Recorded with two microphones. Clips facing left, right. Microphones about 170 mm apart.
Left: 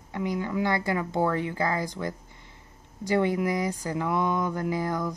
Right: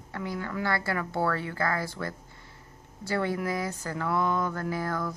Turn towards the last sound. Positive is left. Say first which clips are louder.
# left 3 dB
turn(degrees=15)  # may be behind; listen again after turning